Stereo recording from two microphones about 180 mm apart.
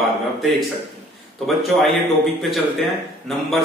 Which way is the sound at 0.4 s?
Centre (ahead or behind).